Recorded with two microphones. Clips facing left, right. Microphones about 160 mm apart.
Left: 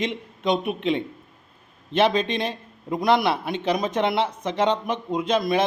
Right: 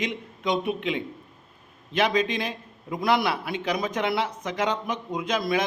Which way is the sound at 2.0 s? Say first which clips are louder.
Left 3 dB; 25° left (ahead or behind).